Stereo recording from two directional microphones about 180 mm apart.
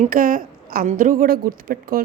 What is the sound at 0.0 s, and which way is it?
A woman's voice, 50° right (ahead or behind).